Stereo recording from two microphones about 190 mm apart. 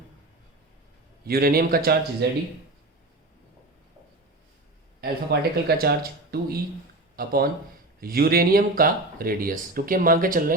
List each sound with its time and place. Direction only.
1.2 s speech: 55° right (ahead or behind)
2.2 s speech: 60° right (ahead or behind)
4.9 s speech: 55° right (ahead or behind)